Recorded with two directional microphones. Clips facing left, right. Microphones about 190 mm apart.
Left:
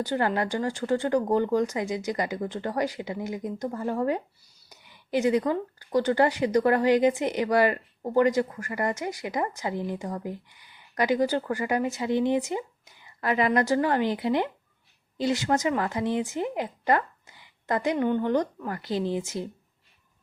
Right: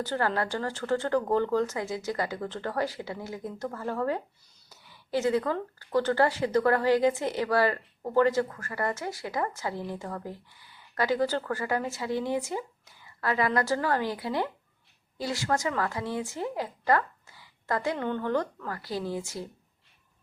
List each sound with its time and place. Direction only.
0.0 s speech: 15° left (ahead or behind)